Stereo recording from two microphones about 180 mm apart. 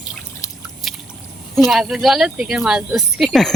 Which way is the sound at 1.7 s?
Centre (ahead or behind).